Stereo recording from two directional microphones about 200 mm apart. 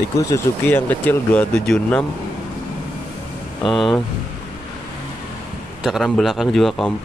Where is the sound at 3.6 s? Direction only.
Centre (ahead or behind).